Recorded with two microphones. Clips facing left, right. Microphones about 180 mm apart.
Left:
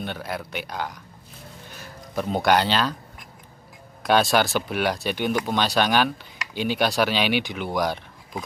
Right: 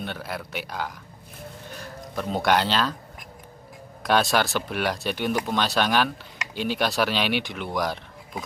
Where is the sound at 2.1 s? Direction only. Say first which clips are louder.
Left 2 dB; centre (ahead or behind).